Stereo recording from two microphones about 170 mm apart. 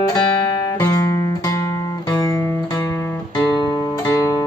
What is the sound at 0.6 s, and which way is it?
Music, 20° left (ahead or behind).